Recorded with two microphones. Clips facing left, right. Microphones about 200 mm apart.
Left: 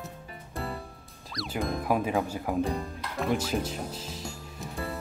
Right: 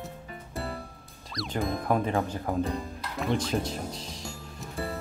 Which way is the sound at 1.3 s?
Centre (ahead or behind).